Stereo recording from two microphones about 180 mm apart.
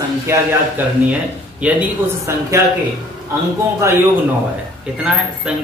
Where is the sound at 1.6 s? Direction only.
5° right (ahead or behind).